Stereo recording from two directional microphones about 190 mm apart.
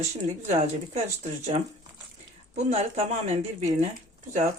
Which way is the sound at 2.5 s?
35° right (ahead or behind).